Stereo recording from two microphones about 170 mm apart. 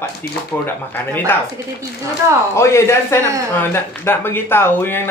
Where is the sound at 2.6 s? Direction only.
15° left (ahead or behind).